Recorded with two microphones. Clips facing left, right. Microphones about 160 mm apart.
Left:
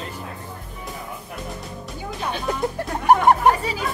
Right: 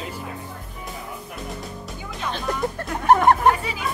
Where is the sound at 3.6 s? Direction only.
35° left (ahead or behind).